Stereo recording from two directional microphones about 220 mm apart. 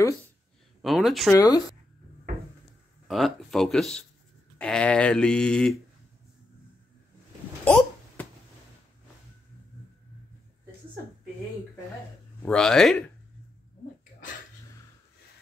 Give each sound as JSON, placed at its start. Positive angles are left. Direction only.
{"t": 0.8, "sound": "speech", "side_deg": 0}
{"t": 1.3, "sound": "speech", "side_deg": 15}
{"t": 3.1, "sound": "speech", "side_deg": 0}
{"t": 7.6, "sound": "a sound", "side_deg": 5}
{"t": 12.4, "sound": "speech", "side_deg": 5}